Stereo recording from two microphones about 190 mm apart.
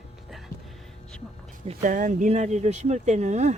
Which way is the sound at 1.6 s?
45° right (ahead or behind).